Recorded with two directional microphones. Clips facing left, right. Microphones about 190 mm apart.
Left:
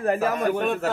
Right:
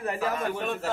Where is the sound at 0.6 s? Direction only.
65° left (ahead or behind).